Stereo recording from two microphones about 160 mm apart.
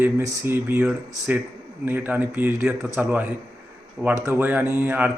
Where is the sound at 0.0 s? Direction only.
15° right (ahead or behind).